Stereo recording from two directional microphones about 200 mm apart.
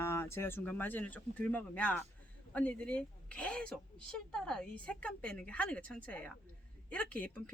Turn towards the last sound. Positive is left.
turn(degrees=5)  # may be behind; listen again after turning